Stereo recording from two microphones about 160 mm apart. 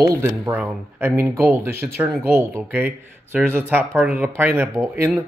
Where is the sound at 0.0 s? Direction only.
20° right (ahead or behind).